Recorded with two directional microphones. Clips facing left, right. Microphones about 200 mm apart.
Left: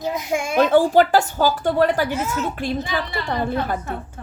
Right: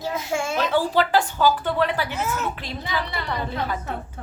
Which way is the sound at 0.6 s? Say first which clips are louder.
Left 8 dB; 50° left (ahead or behind).